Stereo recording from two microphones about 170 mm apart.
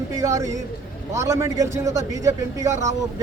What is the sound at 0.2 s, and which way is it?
A man's voice, 20° right (ahead or behind).